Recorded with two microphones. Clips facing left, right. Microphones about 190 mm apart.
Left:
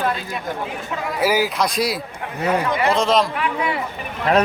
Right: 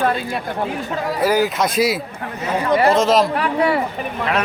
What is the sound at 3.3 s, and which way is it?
Speech, 40° right (ahead or behind).